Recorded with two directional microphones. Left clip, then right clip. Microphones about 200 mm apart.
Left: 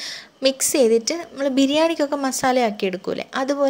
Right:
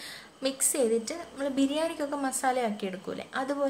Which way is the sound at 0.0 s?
40° left (ahead or behind).